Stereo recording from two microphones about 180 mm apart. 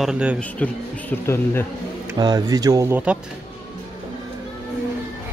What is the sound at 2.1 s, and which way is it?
Speech, 20° right (ahead or behind).